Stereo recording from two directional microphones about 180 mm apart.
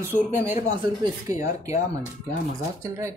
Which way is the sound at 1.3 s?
15° right (ahead or behind).